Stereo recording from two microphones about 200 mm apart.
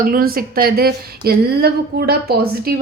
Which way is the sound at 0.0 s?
45° right (ahead or behind).